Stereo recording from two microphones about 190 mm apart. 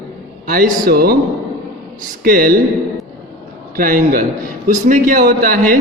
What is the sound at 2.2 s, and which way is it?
Speech, 50° right (ahead or behind).